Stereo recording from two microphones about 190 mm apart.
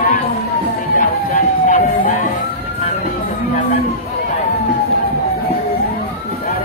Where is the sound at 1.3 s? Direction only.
45° left (ahead or behind).